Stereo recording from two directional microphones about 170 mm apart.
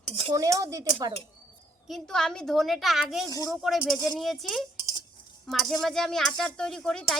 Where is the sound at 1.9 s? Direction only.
5° left (ahead or behind).